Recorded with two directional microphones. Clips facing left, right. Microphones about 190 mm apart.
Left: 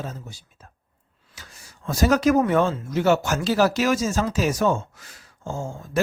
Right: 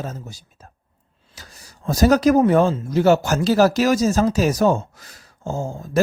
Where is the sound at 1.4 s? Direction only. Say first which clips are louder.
Right 3 dB; 35° right (ahead or behind).